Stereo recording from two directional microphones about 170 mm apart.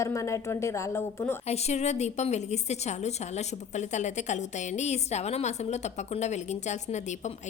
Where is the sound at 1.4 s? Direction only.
40° left (ahead or behind).